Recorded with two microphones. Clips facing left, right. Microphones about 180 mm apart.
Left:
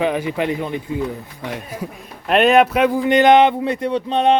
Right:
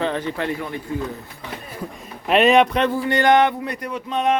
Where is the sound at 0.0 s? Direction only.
10° left (ahead or behind).